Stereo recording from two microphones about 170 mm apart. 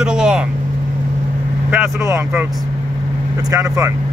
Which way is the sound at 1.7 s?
15° right (ahead or behind).